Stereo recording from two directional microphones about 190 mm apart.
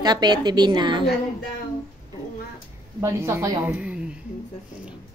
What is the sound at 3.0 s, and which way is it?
Speech, 15° right (ahead or behind).